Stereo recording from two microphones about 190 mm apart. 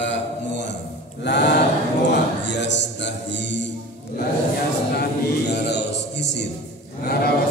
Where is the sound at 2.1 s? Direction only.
65° left (ahead or behind).